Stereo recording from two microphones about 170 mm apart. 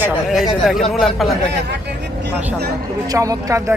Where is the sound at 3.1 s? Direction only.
20° right (ahead or behind).